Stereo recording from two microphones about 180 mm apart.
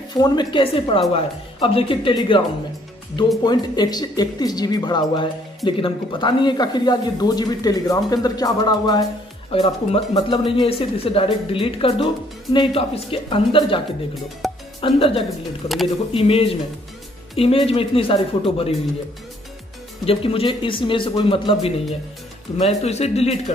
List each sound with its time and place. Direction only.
0.1 s speech: 25° left (ahead or behind)
3.4 s speech: 20° left (ahead or behind)
14.4 s music: centre (ahead or behind)
14.8 s speech: 30° left (ahead or behind)
15.2 s speech: centre (ahead or behind)
16.1 s speech: 30° left (ahead or behind)
20.1 s speech: 30° left (ahead or behind)